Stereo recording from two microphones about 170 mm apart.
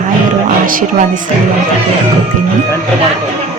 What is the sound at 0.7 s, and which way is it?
Speech, 55° right (ahead or behind).